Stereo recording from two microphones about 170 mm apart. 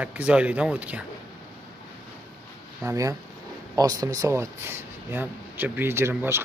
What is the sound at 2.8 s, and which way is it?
Speech, 20° right (ahead or behind).